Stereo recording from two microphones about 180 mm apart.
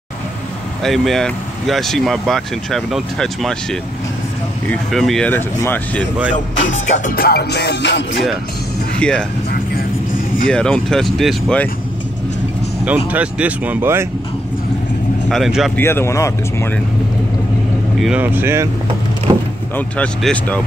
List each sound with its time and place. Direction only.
0.8 s speech: centre (ahead or behind)
4.6 s speech: centre (ahead or behind)
6.3 s music: 40° left (ahead or behind); by 8.2 s 75° left (ahead or behind)
9.0 s speech: 5° left (ahead or behind)
10.5 s speech: 5° left (ahead or behind)
13.1 s speech: 10° right (ahead or behind)
15.2 s speech: centre (ahead or behind)
15.7 s speech: 15° left (ahead or behind)
18.0 s speech: 10° right (ahead or behind)
19.3 s vehicle: 20° right (ahead or behind)
19.7 s speech: 5° left (ahead or behind)